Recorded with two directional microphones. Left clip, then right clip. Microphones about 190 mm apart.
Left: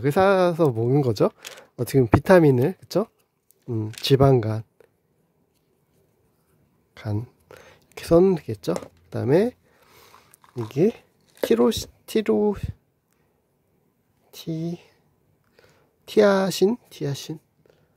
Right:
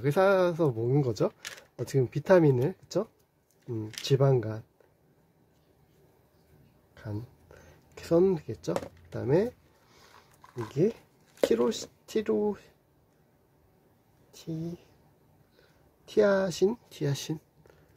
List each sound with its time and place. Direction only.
0.0 s speech: 35° left (ahead or behind)
6.9 s a sound: 45° left (ahead or behind)
10.7 s speech: 45° left (ahead or behind)
14.3 s speech: 50° left (ahead or behind)
16.1 s speech: 45° left (ahead or behind); by 17.7 s 30° left (ahead or behind)